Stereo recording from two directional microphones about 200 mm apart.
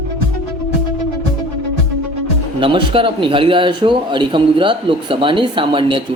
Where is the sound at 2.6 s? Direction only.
25° right (ahead or behind).